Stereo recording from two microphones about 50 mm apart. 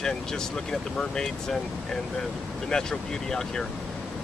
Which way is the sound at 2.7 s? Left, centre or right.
Centre.